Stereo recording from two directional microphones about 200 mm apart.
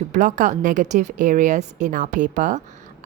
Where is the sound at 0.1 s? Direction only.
40° right (ahead or behind).